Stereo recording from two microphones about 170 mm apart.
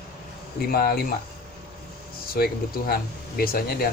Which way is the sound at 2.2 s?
60° left (ahead or behind).